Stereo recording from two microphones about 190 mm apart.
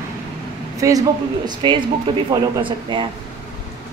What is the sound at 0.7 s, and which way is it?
Speech, 20° right (ahead or behind).